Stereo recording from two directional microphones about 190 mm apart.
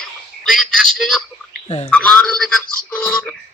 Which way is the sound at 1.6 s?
35° left (ahead or behind).